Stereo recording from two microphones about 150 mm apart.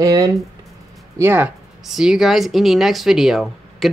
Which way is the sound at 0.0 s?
25° right (ahead or behind).